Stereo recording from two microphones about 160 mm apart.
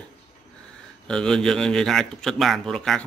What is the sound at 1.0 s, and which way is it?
Speech, 5° left (ahead or behind).